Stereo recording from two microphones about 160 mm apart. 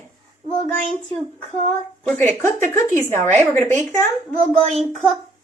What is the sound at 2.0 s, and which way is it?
Speech, 10° left (ahead or behind).